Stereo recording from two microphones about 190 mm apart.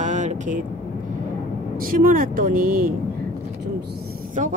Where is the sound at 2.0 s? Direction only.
45° right (ahead or behind).